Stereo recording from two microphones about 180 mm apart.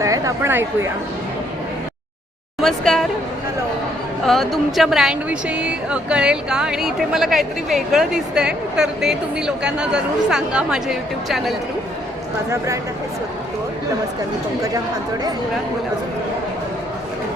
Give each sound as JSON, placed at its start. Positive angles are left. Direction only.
{"t": 0.0, "sound": "speech", "side_deg": -15}
{"t": 2.6, "sound": "speech", "side_deg": 0}
{"t": 4.3, "sound": "speech", "side_deg": 0}
{"t": 12.5, "sound": "speech", "side_deg": -15}